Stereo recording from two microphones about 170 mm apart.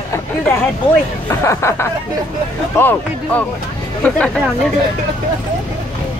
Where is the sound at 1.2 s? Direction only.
15° left (ahead or behind).